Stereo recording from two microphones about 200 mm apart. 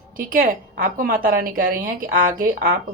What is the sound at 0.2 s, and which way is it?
A woman's voice, 45° right (ahead or behind).